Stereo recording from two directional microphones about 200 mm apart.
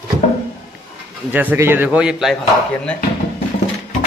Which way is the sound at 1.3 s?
10° right (ahead or behind).